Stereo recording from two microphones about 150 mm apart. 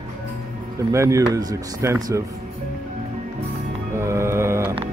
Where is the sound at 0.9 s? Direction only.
20° right (ahead or behind).